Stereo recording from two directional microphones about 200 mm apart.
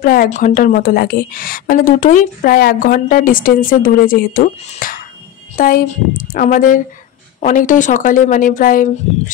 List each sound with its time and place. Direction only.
0.0 s a woman's voice: 45° left (ahead or behind)